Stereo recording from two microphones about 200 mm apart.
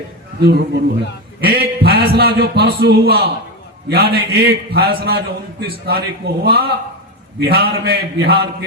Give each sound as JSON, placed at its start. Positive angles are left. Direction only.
{"t": 0.3, "sound": "a man's voice", "side_deg": -55}